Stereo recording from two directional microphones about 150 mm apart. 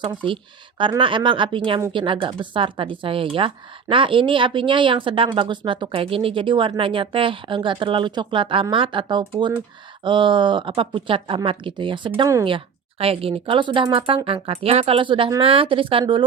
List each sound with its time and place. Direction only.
0.0 s speech: 30° right (ahead or behind)